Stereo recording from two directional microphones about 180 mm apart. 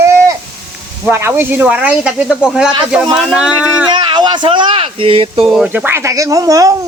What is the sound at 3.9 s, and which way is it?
Speech, 25° right (ahead or behind).